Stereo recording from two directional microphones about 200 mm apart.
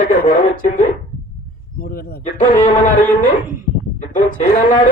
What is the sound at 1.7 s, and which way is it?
Speech, 50° left (ahead or behind).